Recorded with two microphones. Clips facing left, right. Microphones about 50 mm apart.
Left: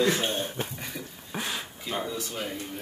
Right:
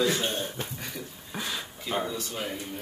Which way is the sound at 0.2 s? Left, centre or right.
Left.